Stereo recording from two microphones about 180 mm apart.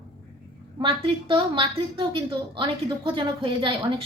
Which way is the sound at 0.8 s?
30° right (ahead or behind).